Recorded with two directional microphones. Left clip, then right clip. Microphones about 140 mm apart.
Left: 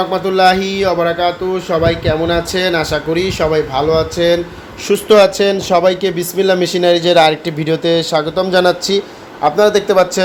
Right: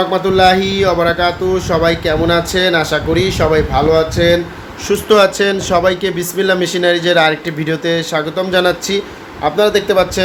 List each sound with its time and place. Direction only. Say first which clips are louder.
0.1 s speech: even; 10° left (ahead or behind)
4.9 s speech: left 1 dB; 20° left (ahead or behind)